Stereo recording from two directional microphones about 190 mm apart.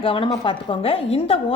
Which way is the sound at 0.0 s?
25° left (ahead or behind).